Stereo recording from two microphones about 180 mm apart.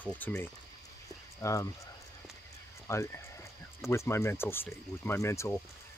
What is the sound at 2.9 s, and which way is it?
Speech, 15° left (ahead or behind).